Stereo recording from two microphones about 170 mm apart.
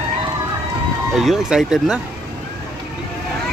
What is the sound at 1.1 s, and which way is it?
Speech, 5° right (ahead or behind).